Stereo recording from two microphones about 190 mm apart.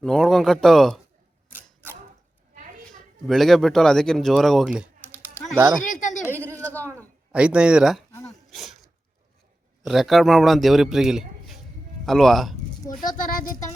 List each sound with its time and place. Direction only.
0.0 s a man's voice: centre (ahead or behind)
1.5 s camera: 10° right (ahead or behind)
3.2 s speech: centre (ahead or behind)
5.8 s a sound: 40° left (ahead or behind)
6.8 s a sound: 10° right (ahead or behind)
9.8 s a man's voice: centre (ahead or behind)
13.1 s speech: 45° left (ahead or behind)